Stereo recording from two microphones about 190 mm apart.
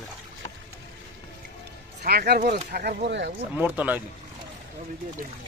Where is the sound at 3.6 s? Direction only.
10° right (ahead or behind).